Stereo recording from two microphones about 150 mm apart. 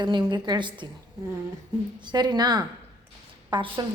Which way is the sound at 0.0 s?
30° right (ahead or behind).